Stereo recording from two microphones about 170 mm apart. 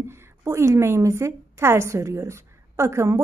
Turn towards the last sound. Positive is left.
turn(degrees=-15)  # may be behind; listen again after turning